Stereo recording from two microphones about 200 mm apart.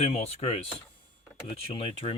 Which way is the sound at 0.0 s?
30° left (ahead or behind).